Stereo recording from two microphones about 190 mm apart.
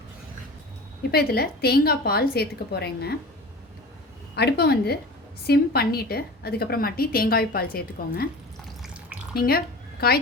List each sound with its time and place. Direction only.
1.1 s a woman's voice: 55° left (ahead or behind)
4.4 s a woman's voice: 55° left (ahead or behind)
8.8 s drip: 5° right (ahead or behind)
9.3 s a sound: 50° left (ahead or behind)